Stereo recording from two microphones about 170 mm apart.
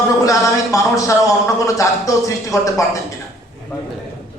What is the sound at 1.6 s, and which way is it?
A man's voice, 20° left (ahead or behind).